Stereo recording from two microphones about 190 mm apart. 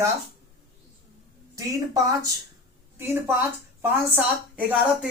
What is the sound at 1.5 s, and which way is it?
Speech, 15° right (ahead or behind).